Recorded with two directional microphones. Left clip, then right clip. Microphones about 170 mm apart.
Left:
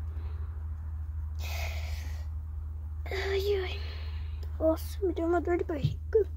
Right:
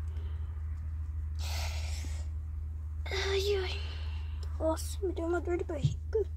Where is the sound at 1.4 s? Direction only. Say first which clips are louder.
Left 1 dB; 35° left (ahead or behind).